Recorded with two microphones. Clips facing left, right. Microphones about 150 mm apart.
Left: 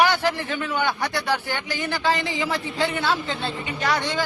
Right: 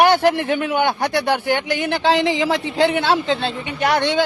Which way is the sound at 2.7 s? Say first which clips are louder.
Right 7 dB; 70° right (ahead or behind).